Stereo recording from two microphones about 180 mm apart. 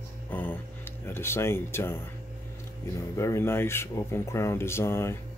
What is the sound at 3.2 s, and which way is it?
Speech, 15° left (ahead or behind).